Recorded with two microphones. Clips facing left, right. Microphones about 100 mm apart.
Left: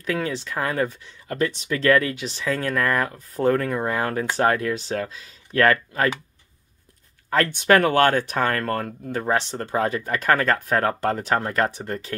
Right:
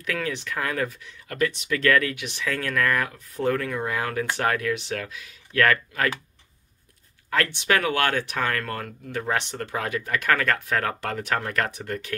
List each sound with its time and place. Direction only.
0.0 s speech: 30° left (ahead or behind)
7.2 s speech: 40° left (ahead or behind)